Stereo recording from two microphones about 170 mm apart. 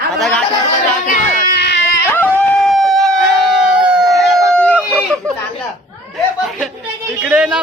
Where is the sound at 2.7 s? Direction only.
Centre (ahead or behind).